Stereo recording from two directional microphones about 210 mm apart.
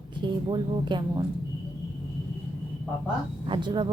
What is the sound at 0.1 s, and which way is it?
A woman's voice, 20° right (ahead or behind).